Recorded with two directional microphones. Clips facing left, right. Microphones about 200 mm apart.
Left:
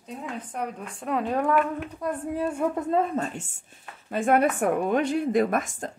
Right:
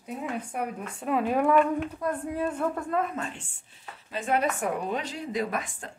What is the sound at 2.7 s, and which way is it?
A woman's voice, 25° left (ahead or behind).